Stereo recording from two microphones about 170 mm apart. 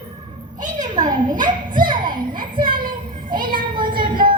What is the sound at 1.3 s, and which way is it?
Children playing, 25° right (ahead or behind).